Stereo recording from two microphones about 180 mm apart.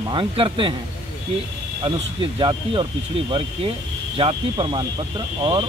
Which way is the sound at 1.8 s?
30° right (ahead or behind).